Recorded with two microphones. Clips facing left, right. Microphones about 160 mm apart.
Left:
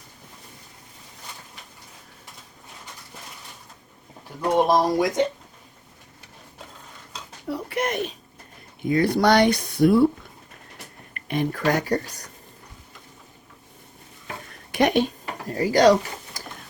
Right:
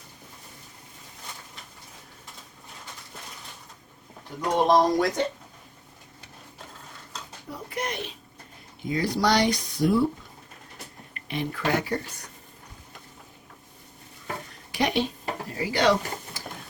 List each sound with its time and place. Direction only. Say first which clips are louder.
4.5 s speech: left 1 dB; 10° left (ahead or behind)
7.4 s a sound: left 7 dB; 75° left (ahead or behind)
7.9 s speech: left 7 dB; 45° left (ahead or behind)
8.8 s speech: left 5 dB; 55° left (ahead or behind)
11.1 s speech: left 6 dB; 50° left (ahead or behind)
14.7 s a sound: left 5 dB; 50° left (ahead or behind)
15.5 s speech: left 7 dB; 40° left (ahead or behind)